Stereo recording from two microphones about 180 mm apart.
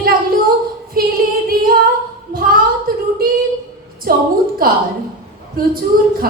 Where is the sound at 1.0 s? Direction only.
55° right (ahead or behind).